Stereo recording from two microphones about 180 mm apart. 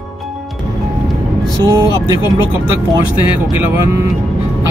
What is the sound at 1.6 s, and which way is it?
Speech, 20° right (ahead or behind).